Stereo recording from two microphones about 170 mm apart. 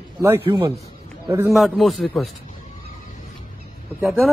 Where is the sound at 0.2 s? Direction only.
15° right (ahead or behind).